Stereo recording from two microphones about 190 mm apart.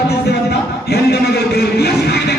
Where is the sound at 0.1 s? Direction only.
60° left (ahead or behind).